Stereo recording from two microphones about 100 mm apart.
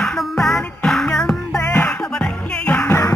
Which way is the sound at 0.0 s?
Centre (ahead or behind).